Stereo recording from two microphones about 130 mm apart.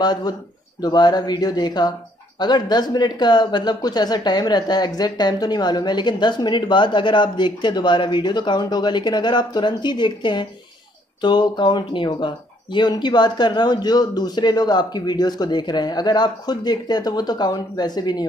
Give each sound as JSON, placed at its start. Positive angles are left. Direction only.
{"t": 0.0, "sound": "speech", "side_deg": 30}